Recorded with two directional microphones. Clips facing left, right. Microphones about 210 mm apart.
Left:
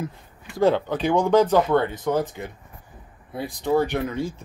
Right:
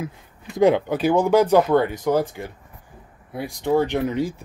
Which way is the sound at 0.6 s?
15° right (ahead or behind).